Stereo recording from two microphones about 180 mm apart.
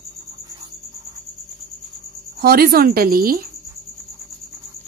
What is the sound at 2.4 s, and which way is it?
Speech, 60° right (ahead or behind).